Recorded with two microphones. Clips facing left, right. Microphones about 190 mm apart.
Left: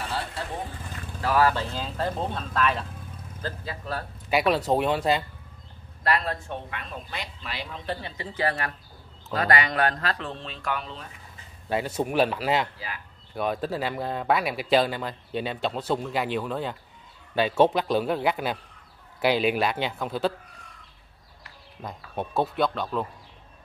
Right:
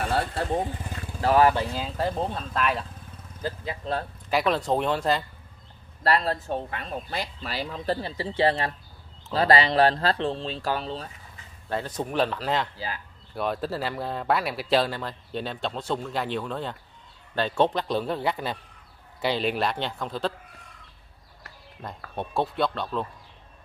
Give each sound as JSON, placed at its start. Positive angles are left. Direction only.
{"t": 0.0, "sound": "vehicle", "side_deg": -50}
{"t": 1.2, "sound": "speech", "side_deg": -20}
{"t": 3.4, "sound": "speech", "side_deg": -20}
{"t": 4.3, "sound": "speech", "side_deg": 5}
{"t": 6.0, "sound": "speech", "side_deg": -30}
{"t": 11.7, "sound": "speech", "side_deg": 10}
{"t": 12.7, "sound": "speech", "side_deg": -30}
{"t": 13.3, "sound": "speech", "side_deg": 0}
{"t": 21.8, "sound": "speech", "side_deg": 5}